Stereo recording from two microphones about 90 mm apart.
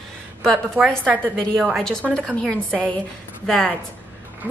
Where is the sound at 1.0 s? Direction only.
15° left (ahead or behind).